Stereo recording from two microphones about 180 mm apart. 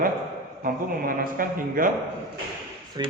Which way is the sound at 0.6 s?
50° right (ahead or behind).